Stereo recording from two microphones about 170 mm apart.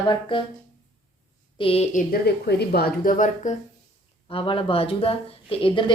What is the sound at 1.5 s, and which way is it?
Speech, 35° left (ahead or behind).